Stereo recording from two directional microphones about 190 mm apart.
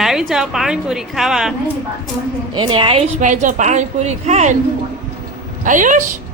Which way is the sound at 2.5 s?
25° right (ahead or behind).